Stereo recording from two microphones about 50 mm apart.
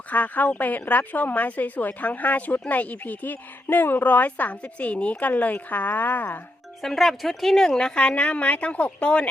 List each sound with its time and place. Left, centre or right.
0.1 s speech: left
5.3 s speech: left
6.8 s speech: centre; by 9.2 s left